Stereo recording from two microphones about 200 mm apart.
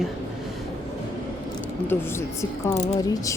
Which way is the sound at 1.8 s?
10° left (ahead or behind).